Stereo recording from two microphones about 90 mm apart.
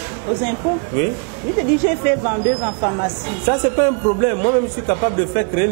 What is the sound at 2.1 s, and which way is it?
A man's voice, 25° right (ahead or behind).